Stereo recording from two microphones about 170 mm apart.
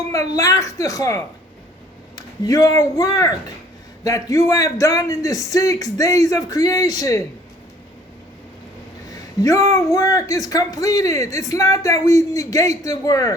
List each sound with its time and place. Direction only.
0.1 s speech: 20° left (ahead or behind)
9.1 s speech: 20° left (ahead or behind)